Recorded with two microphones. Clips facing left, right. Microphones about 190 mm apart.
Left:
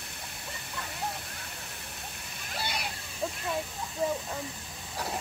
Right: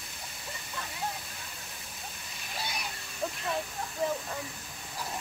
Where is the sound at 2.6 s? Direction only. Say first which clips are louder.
Left 3 dB; 70° left (ahead or behind).